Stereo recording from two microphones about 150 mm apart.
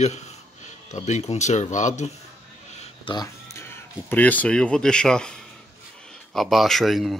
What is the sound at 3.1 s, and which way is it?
Speech, 20° left (ahead or behind).